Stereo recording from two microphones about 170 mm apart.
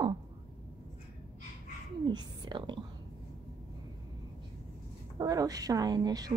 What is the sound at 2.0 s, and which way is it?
Whispering, 25° right (ahead or behind).